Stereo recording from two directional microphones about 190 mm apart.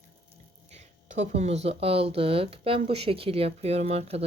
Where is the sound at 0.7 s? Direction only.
35° right (ahead or behind).